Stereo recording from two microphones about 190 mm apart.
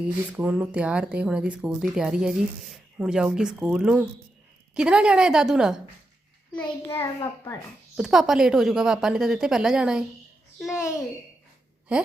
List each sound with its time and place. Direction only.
0.3 s a woman's voice: 5° right (ahead or behind)
6.6 s a child's voice: 10° left (ahead or behind)
7.9 s a woman's voice: centre (ahead or behind)
10.8 s a child's voice: 15° left (ahead or behind)